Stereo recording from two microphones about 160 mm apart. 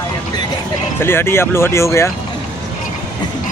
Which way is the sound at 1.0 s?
15° left (ahead or behind).